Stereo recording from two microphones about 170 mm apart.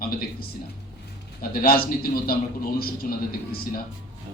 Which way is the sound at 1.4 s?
60° left (ahead or behind).